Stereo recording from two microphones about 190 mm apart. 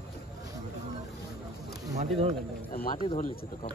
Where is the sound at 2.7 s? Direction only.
50° left (ahead or behind).